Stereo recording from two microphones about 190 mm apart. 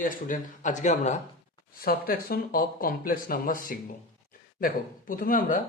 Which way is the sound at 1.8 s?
50° left (ahead or behind).